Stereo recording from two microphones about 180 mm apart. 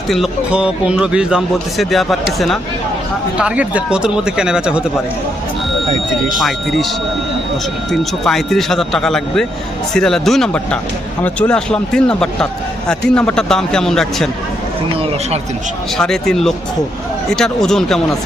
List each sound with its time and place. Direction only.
0.1 s a man's voice: 5° right (ahead or behind)
5.9 s speech: 45° right (ahead or behind)
6.4 s a man's voice: centre (ahead or behind)
7.9 s a man's voice: centre (ahead or behind)
16.0 s a man's voice: centre (ahead or behind)